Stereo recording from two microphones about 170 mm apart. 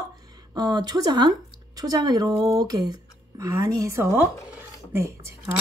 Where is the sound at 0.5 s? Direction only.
25° right (ahead or behind).